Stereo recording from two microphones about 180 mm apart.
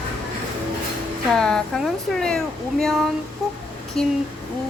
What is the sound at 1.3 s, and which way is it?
Speech, 5° left (ahead or behind).